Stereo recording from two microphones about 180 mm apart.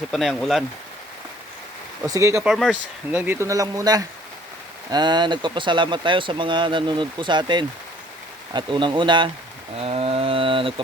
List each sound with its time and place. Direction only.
0.1 s speech: centre (ahead or behind)
2.0 s speech: 15° right (ahead or behind)
2.5 s speech: centre (ahead or behind)
3.1 s speech: 10° right (ahead or behind); by 10.8 s 30° right (ahead or behind)